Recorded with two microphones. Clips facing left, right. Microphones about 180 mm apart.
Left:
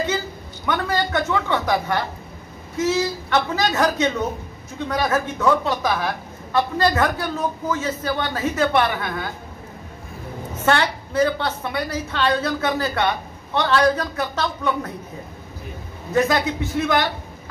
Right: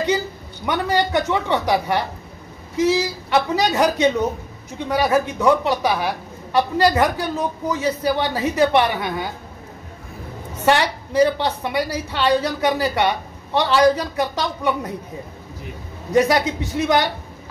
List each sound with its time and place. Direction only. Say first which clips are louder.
0.7 s a woman's voice: right 2 dB; 15° right (ahead or behind)
10.6 s a woman's voice: right 2 dB; 15° right (ahead or behind)
16.1 s a woman's voice: right 3 dB; 15° right (ahead or behind)